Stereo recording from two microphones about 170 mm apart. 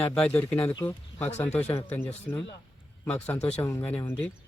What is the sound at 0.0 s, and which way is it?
Speech, 10° left (ahead or behind).